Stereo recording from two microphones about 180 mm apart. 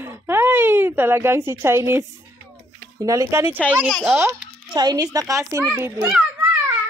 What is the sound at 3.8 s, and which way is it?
Speech, centre (ahead or behind).